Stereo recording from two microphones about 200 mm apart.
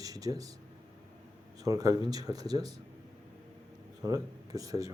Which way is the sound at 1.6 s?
15° right (ahead or behind).